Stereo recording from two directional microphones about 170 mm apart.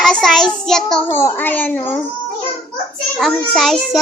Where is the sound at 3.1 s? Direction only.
Centre (ahead or behind).